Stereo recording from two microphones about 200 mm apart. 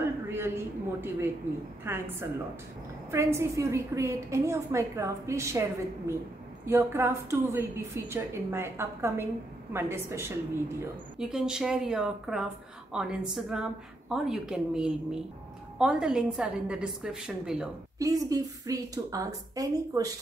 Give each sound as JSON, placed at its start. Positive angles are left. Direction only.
{"t": 0.0, "sound": "a sound", "side_deg": -10}
{"t": 1.9, "sound": "a woman's voice", "side_deg": -10}
{"t": 17.9, "sound": "a woman's voice", "side_deg": -15}